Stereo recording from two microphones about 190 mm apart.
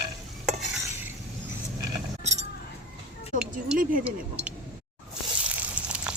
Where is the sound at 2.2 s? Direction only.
35° right (ahead or behind).